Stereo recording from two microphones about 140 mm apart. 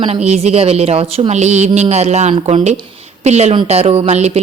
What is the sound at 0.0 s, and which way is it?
A woman's voice, 50° right (ahead or behind).